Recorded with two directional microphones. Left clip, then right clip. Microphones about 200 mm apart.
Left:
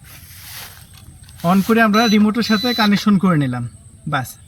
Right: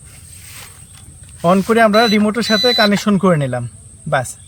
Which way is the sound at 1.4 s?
30° right (ahead or behind).